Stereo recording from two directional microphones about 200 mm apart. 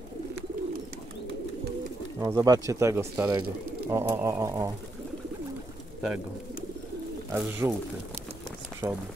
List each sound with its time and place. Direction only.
2.1 s speech: 15° right (ahead or behind)
7.3 s speech: 10° right (ahead or behind)
8.8 s speech: 10° right (ahead or behind)